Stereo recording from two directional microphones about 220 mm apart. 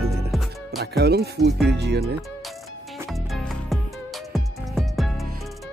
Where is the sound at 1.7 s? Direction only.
50° right (ahead or behind).